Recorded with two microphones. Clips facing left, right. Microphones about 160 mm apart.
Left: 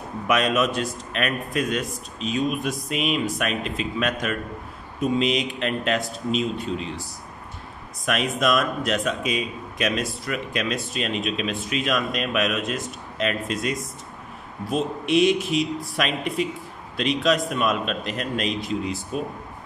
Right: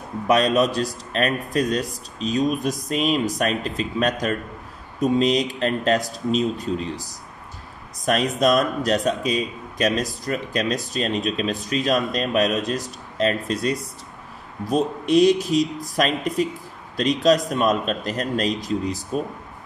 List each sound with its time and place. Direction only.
0.3 s speech: 35° right (ahead or behind)